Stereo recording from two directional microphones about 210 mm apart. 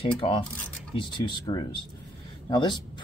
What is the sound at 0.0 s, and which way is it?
Speech, 25° left (ahead or behind).